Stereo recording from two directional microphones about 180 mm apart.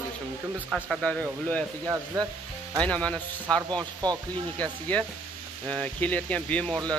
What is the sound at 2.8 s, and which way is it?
Speech, 5° left (ahead or behind).